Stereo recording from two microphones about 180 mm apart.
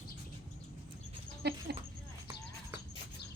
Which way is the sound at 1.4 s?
65° right (ahead or behind).